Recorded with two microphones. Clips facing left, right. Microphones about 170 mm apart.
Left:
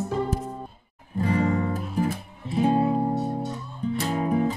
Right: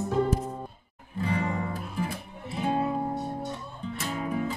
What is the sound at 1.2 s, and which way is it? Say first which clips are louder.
Music: left 6 dB; 45° left (ahead or behind).